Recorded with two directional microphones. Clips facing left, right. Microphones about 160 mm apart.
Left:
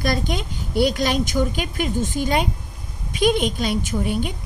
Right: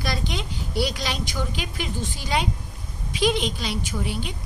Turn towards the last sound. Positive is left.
turn(degrees=50)  # may be behind; listen again after turning